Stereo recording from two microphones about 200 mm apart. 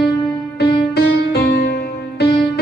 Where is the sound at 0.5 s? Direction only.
55° left (ahead or behind).